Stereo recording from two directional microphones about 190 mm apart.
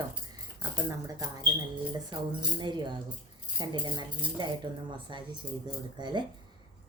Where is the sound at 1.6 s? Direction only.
20° right (ahead or behind).